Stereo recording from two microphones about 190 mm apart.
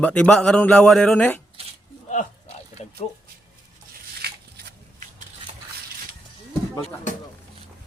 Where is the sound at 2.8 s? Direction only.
35° left (ahead or behind).